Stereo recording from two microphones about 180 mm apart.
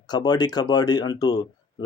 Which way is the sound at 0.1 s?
20° left (ahead or behind).